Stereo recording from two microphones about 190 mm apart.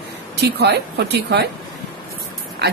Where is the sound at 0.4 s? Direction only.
60° right (ahead or behind).